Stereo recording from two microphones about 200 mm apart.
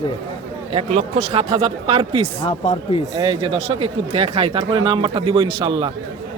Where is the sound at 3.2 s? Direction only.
25° right (ahead or behind).